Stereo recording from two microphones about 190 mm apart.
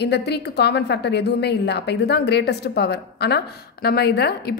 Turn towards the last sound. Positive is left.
turn(degrees=60)  # may be behind; listen again after turning